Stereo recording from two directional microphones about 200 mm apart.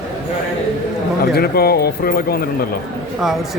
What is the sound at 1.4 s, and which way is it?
Speech, 50° left (ahead or behind).